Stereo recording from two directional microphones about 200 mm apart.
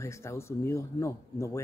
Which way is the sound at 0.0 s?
15° left (ahead or behind).